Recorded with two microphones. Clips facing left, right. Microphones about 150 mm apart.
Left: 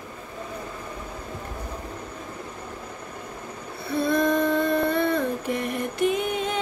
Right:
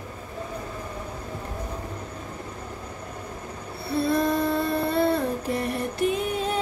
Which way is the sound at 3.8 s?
35° right (ahead or behind).